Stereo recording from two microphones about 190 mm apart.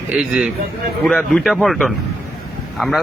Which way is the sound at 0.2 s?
5° right (ahead or behind).